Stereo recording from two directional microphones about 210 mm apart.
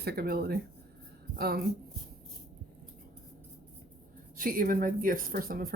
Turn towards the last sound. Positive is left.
turn(degrees=-45)  # may be behind; listen again after turning